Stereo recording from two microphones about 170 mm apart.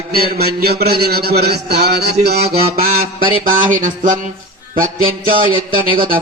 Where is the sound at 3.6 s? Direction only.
50° right (ahead or behind).